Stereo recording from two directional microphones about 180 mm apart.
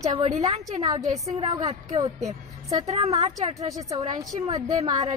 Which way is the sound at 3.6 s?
20° right (ahead or behind).